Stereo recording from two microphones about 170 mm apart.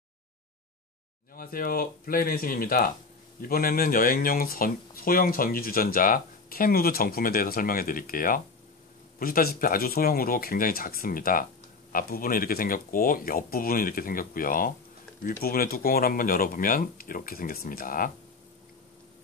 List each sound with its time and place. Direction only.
1.3 s speech: 55° left (ahead or behind)